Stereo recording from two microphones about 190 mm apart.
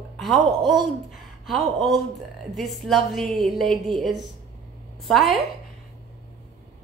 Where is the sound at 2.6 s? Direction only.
Centre (ahead or behind).